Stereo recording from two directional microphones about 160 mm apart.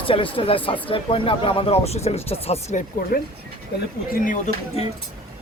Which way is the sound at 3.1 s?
70° left (ahead or behind).